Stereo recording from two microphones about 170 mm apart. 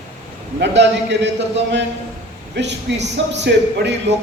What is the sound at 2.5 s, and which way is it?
Speech, 90° right.